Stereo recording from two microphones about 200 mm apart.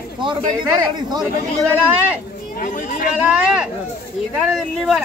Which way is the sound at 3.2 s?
5° right (ahead or behind).